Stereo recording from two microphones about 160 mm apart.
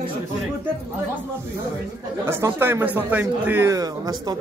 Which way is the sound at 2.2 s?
15° right (ahead or behind).